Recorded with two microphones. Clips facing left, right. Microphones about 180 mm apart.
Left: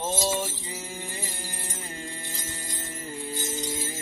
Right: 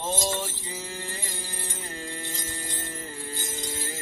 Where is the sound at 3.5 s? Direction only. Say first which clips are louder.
Left 3 dB; 10° left (ahead or behind).